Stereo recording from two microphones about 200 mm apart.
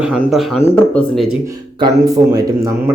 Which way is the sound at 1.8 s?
20° right (ahead or behind).